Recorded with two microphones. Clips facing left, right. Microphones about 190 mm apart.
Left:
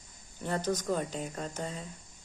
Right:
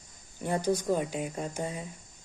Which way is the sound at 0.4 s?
10° right (ahead or behind).